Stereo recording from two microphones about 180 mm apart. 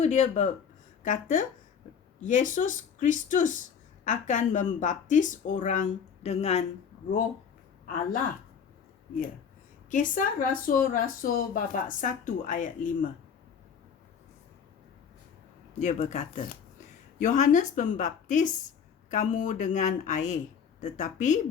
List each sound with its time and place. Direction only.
0.0 s speech: 40° left (ahead or behind)
9.9 s speech: 45° left (ahead or behind)
15.8 s speech: 40° left (ahead or behind)